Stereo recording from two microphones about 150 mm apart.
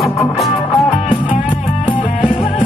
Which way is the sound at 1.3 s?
35° left (ahead or behind).